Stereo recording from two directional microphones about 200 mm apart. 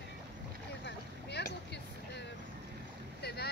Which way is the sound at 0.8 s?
55° left (ahead or behind).